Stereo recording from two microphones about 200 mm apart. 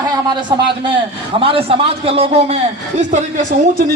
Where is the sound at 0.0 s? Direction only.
20° right (ahead or behind).